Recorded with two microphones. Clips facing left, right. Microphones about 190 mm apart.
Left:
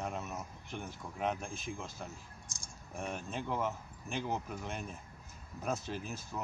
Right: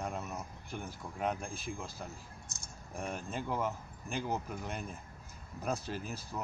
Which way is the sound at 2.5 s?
60° right (ahead or behind).